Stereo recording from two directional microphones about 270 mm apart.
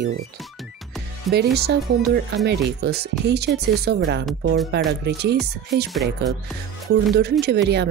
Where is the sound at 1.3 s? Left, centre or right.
Right.